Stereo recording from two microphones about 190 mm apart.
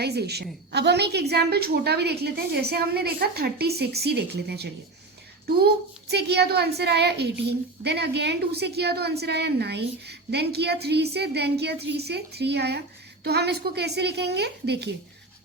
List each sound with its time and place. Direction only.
0.0 s a woman's voice: 60° right (ahead or behind)
6.1 s a woman's voice: 60° right (ahead or behind)